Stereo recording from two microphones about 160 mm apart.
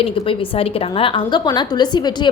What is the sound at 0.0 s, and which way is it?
A woman's voice, 35° left (ahead or behind).